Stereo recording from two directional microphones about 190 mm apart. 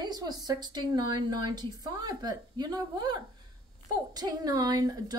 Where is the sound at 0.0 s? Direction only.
20° right (ahead or behind).